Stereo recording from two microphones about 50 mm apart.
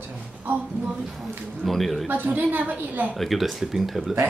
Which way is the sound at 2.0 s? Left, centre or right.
Right.